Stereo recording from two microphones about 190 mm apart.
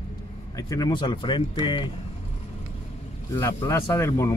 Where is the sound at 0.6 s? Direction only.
20° left (ahead or behind).